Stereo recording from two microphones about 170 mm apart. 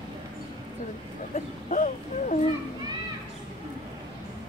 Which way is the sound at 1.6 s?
45° left (ahead or behind).